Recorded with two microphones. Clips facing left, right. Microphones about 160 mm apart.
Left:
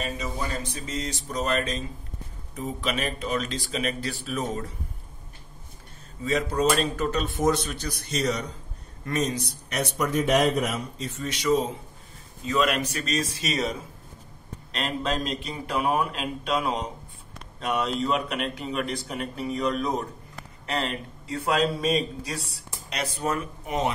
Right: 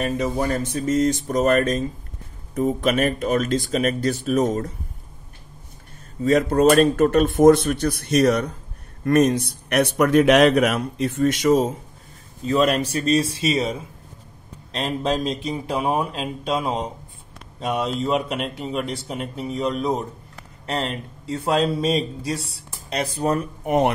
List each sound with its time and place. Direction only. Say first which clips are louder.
0.0 s speech: right 9 dB; 55° right (ahead or behind)
6.2 s speech: right 8 dB; 50° right (ahead or behind)
12.4 s speech: right 5 dB; 35° right (ahead or behind)
23.6 s speech: right 9 dB; 50° right (ahead or behind)